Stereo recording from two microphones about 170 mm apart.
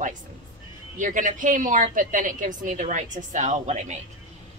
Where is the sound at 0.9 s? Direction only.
50° right (ahead or behind).